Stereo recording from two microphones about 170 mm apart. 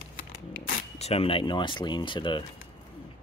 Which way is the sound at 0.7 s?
40° left (ahead or behind).